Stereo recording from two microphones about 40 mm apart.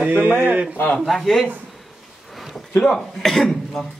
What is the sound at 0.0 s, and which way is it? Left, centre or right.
Speech, right.